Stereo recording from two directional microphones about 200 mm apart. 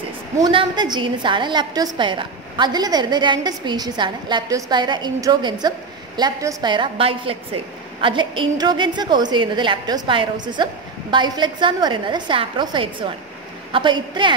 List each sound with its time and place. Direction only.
0.4 s a woman's voice: 25° right (ahead or behind)